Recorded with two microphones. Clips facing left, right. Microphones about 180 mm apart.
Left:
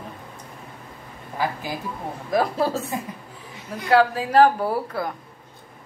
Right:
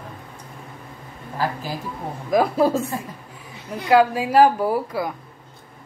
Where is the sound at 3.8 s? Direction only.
15° right (ahead or behind).